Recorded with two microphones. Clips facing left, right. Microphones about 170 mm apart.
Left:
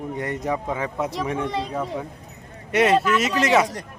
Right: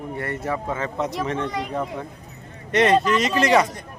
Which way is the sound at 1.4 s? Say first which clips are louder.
Left 1 dB; 30° left (ahead or behind).